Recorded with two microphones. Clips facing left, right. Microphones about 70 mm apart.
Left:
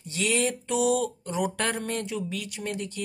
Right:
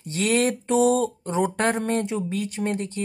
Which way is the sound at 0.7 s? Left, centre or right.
Right.